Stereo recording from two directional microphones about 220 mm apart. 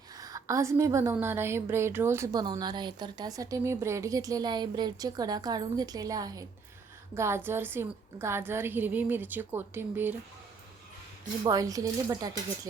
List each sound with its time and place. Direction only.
0.2 s a woman's voice: 15° right (ahead or behind)
11.4 s a woman's voice: 15° right (ahead or behind)